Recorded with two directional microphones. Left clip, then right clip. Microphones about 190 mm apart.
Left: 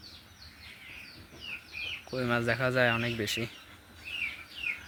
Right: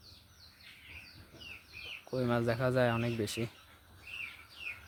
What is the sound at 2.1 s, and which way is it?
Speech, 10° right (ahead or behind).